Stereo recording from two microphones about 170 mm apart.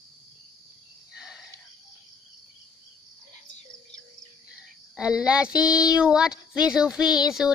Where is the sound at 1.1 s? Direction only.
5° right (ahead or behind).